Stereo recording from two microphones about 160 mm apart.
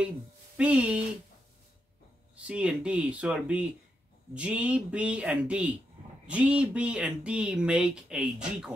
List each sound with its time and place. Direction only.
0.6 s speech: 10° right (ahead or behind)
2.3 s speech: 5° right (ahead or behind)